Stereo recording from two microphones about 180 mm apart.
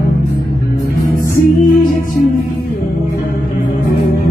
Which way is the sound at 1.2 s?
50° left (ahead or behind).